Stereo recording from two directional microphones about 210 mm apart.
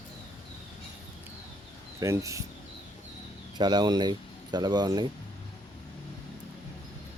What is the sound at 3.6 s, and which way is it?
Speech, 20° right (ahead or behind).